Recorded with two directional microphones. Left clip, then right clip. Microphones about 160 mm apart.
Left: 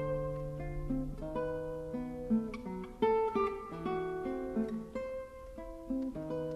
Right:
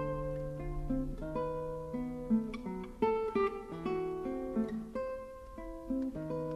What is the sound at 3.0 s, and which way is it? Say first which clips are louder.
Guitar: left 1 dB; 20° left (ahead or behind).